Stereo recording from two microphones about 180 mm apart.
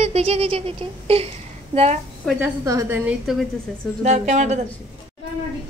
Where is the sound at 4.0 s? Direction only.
40° right (ahead or behind).